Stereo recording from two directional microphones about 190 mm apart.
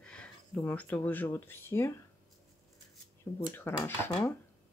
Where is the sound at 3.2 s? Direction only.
15° left (ahead or behind).